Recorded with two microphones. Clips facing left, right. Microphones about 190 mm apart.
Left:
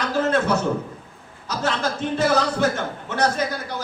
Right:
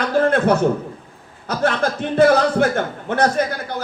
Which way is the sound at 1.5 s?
60° right (ahead or behind).